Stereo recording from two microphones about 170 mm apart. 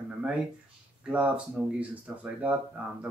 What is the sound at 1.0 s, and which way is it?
Speech, 5° right (ahead or behind).